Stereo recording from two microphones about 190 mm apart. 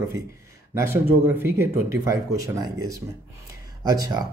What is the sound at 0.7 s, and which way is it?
Speech, 15° right (ahead or behind).